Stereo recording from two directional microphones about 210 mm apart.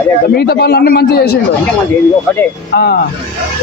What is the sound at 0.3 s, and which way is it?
Speech, 50° left (ahead or behind).